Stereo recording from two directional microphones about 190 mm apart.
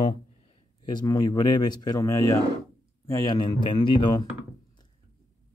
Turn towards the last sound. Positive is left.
turn(degrees=25)  # may be behind; listen again after turning